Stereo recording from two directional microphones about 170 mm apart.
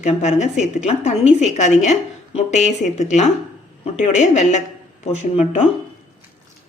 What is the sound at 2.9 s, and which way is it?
A woman's voice, 45° left (ahead or behind).